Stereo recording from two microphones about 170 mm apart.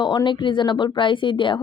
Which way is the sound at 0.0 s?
25° left (ahead or behind).